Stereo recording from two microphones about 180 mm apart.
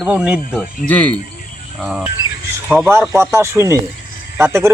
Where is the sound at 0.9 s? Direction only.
10° left (ahead or behind).